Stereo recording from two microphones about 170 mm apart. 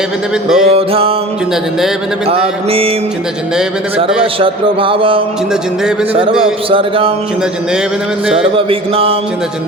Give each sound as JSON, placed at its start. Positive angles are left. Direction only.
{"t": 0.4, "sound": "mantra", "side_deg": -5}
{"t": 0.7, "sound": "speech", "side_deg": -35}
{"t": 2.2, "sound": "speech", "side_deg": -35}
{"t": 4.2, "sound": "speech", "side_deg": -30}
{"t": 6.7, "sound": "speech", "side_deg": -30}
{"t": 8.5, "sound": "speech", "side_deg": -35}